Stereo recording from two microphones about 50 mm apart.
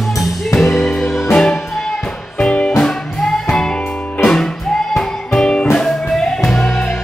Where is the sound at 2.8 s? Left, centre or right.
Centre.